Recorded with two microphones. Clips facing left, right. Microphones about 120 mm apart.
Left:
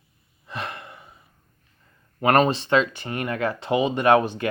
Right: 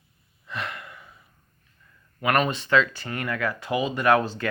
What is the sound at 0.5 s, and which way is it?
Gasp, 25° left (ahead or behind).